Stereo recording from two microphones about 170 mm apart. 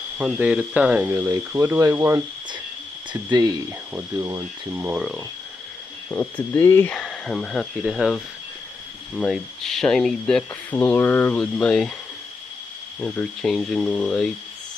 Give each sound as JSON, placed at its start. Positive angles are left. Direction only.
{"t": 0.2, "sound": "speech", "side_deg": -10}
{"t": 6.0, "sound": "speech", "side_deg": 10}
{"t": 7.0, "sound": "speech", "side_deg": 5}
{"t": 13.0, "sound": "speech", "side_deg": 10}